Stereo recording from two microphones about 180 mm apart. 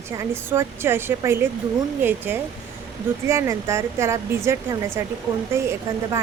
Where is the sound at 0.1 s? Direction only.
15° right (ahead or behind).